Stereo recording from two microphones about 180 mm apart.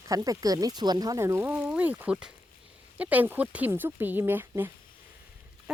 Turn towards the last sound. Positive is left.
turn(degrees=-10)  # may be behind; listen again after turning